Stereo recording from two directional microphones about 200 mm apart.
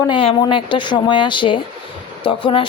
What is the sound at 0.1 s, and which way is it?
Speech, 25° left (ahead or behind).